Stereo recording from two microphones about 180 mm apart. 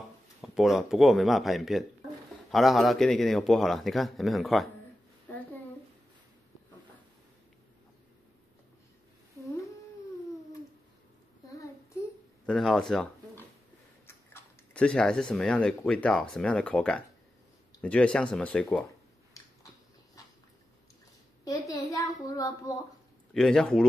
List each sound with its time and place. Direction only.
0.4 s speech: centre (ahead or behind)
12.4 s speech: centre (ahead or behind)
21.5 s a sound: 20° left (ahead or behind)
23.3 s speech: centre (ahead or behind)